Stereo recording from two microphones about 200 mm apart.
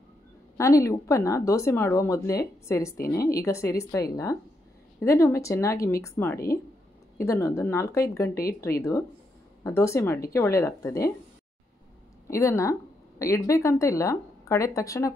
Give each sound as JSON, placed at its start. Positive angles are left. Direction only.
{"t": 0.6, "sound": "speech", "side_deg": 15}
{"t": 9.6, "sound": "speech", "side_deg": 15}
{"t": 12.3, "sound": "speech", "side_deg": 15}